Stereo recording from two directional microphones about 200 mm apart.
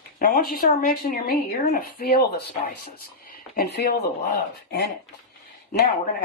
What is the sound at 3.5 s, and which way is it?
Speech, 55° left (ahead or behind).